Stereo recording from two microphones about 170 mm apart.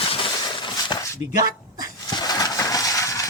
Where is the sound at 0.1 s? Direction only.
30° left (ahead or behind).